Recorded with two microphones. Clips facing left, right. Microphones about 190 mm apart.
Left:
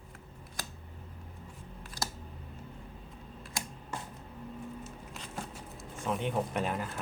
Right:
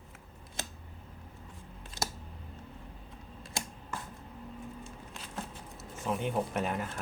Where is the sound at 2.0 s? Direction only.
25° right (ahead or behind).